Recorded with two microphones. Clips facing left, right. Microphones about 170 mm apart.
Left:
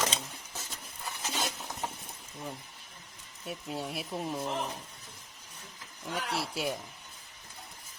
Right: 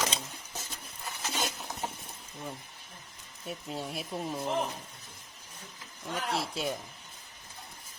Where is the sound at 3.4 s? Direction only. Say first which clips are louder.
Even; centre (ahead or behind).